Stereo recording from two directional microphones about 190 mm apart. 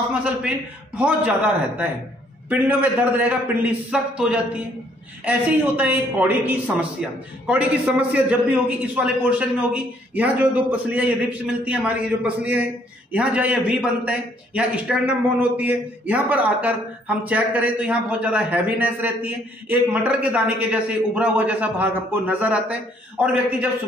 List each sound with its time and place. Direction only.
0.1 s a man's voice: 5° right (ahead or behind)
2.7 s a man's voice: 10° right (ahead or behind)
8.1 s a man's voice: 5° right (ahead or behind)